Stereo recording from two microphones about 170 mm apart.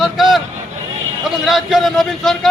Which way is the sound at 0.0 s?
Centre (ahead or behind).